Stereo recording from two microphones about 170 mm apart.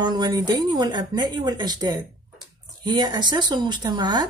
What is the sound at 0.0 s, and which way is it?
Speech, 25° right (ahead or behind).